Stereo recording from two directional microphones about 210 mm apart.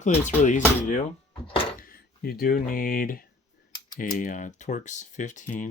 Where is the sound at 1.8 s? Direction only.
45° left (ahead or behind).